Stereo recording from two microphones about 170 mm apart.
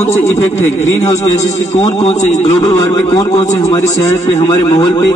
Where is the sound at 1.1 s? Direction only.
20° left (ahead or behind).